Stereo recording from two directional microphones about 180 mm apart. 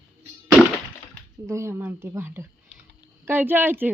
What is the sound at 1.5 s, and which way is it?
Speech, 15° right (ahead or behind).